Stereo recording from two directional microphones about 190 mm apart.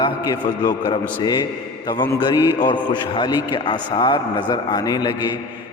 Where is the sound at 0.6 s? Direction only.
20° left (ahead or behind).